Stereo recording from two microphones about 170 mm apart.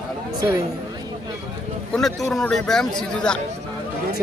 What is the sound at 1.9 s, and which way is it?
Speech, centre (ahead or behind).